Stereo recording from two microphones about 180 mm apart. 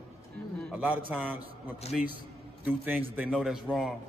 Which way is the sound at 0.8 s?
10° right (ahead or behind).